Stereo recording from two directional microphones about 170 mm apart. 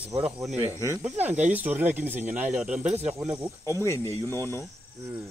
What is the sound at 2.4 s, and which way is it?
Speech, 5° right (ahead or behind).